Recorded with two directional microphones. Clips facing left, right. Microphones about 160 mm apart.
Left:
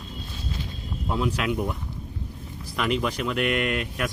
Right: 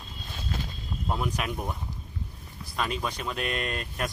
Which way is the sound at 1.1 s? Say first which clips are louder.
Left 5 dB; 90° left.